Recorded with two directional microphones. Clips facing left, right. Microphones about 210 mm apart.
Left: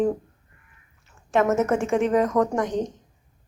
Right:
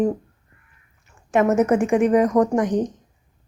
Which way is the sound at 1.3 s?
15° right (ahead or behind).